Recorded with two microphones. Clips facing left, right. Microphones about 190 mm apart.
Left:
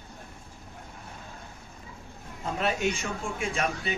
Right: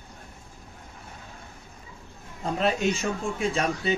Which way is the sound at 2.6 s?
35° right (ahead or behind).